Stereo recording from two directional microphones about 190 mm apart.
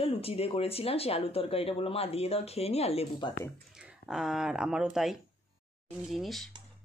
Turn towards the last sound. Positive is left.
turn(degrees=0)  # may be behind; listen again after turning